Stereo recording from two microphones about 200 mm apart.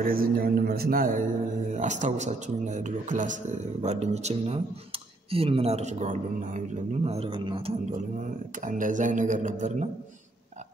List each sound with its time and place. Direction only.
0.0 s a man's voice: 45° right (ahead or behind); by 7.7 s 25° right (ahead or behind)
8.5 s a man's voice: 40° right (ahead or behind)